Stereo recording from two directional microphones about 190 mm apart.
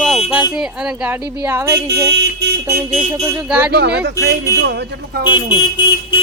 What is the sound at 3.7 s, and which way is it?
Speech, 60° right (ahead or behind).